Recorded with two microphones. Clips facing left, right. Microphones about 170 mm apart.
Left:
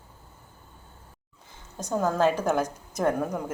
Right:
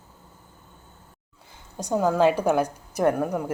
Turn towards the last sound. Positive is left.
turn(degrees=-10)  # may be behind; listen again after turning